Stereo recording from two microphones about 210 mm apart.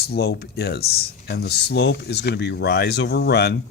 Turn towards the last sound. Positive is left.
turn(degrees=50)  # may be behind; listen again after turning